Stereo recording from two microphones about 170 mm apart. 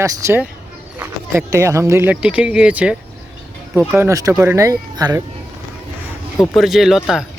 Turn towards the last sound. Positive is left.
turn(degrees=0)  # may be behind; listen again after turning